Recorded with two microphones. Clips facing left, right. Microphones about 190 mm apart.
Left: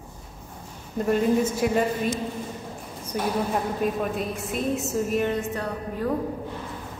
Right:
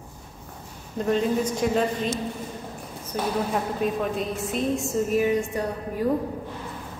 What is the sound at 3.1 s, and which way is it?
A woman's voice, 10° left (ahead or behind).